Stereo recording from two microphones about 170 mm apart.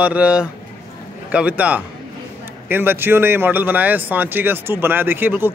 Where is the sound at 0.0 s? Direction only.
5° right (ahead or behind).